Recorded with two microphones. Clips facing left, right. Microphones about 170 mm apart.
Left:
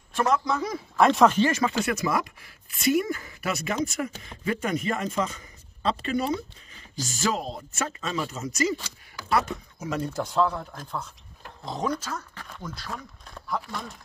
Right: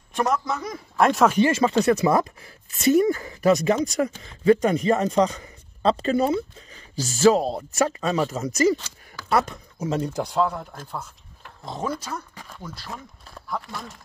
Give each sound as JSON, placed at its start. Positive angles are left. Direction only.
{"t": 0.1, "sound": "a man's voice", "side_deg": -15}
{"t": 0.5, "sound": "speech", "side_deg": 0}
{"t": 1.4, "sound": "a man's voice", "side_deg": -25}
{"t": 9.8, "sound": "speech", "side_deg": -25}
{"t": 10.2, "sound": "speech", "side_deg": -10}